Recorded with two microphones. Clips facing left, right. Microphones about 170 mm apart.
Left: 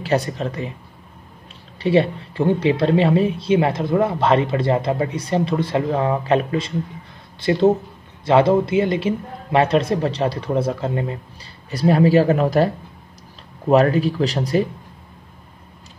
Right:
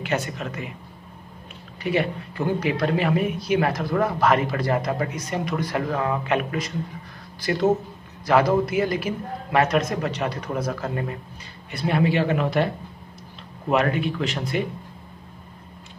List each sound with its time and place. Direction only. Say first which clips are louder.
0.0 s speech: left 6 dB; 35° left (ahead or behind)
1.8 s speech: left 7 dB; 30° left (ahead or behind)
11.7 s speech: left 7 dB; 35° left (ahead or behind)